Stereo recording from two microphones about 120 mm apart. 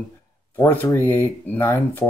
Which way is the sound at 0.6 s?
20° left (ahead or behind).